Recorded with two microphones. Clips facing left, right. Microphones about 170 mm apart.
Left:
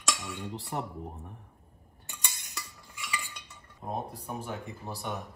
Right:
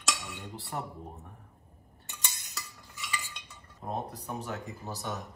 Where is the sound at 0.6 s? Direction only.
20° left (ahead or behind).